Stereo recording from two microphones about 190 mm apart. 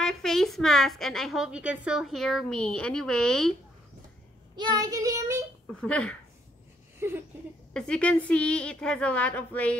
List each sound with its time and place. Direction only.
0.0 s a woman's voice: centre (ahead or behind)
4.6 s child singing: 20° right (ahead or behind)
5.7 s a woman's voice: 5° left (ahead or behind)
7.0 s a sound: 15° right (ahead or behind)
7.7 s a woman's voice: 5° left (ahead or behind)